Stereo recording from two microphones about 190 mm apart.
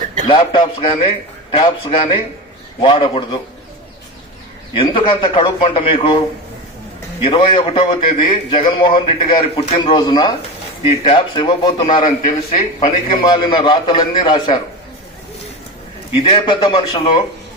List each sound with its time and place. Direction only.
0.3 s a man's voice: 25° left (ahead or behind)
4.8 s a man's voice: 30° left (ahead or behind)
11.9 s a man's voice: 45° left (ahead or behind)
13.2 s a man's voice: 25° left (ahead or behind)
16.2 s a man's voice: 25° left (ahead or behind)